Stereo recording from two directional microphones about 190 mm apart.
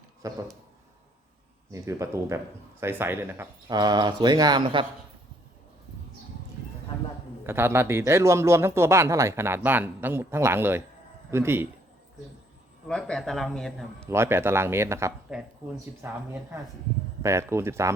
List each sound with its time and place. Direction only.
0.2 s speech: 15° right (ahead or behind)
1.7 s speech: 15° right (ahead or behind)
7.4 s speech: 10° right (ahead or behind)
12.9 s a man's voice: 5° left (ahead or behind)
14.1 s a man's voice: 15° right (ahead or behind)